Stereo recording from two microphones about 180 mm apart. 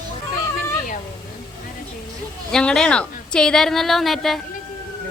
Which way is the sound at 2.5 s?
5° left (ahead or behind).